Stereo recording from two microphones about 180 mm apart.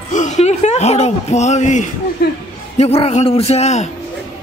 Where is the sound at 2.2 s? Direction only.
60° left (ahead or behind).